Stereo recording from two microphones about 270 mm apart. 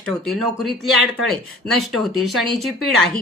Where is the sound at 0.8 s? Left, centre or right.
Right.